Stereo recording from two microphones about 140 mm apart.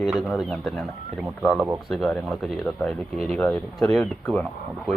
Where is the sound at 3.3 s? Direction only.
10° left (ahead or behind).